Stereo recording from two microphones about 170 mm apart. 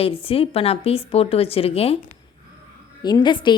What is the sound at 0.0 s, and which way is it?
A woman's voice, 35° left (ahead or behind).